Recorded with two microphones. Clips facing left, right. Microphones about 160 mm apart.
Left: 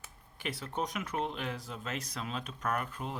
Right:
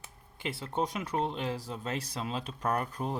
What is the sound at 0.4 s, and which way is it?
Speech, 25° right (ahead or behind).